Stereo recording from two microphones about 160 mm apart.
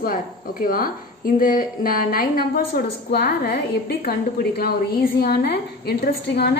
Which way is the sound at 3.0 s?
80° left.